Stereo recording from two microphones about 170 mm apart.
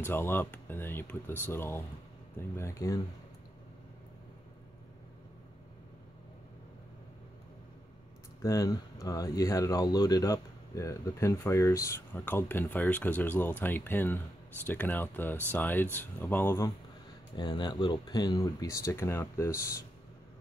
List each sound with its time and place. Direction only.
0.0 s speech: 10° left (ahead or behind)
8.4 s speech: 20° left (ahead or behind)
17.4 s speech: 25° left (ahead or behind)